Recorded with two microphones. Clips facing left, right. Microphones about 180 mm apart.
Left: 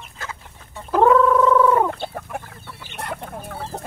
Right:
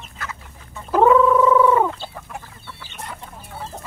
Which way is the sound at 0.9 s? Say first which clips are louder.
Right 1 dB; 5° right (ahead or behind).